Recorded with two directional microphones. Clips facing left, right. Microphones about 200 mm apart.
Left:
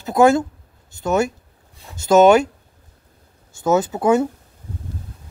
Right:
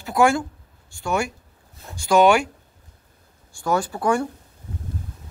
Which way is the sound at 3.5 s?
20° left (ahead or behind).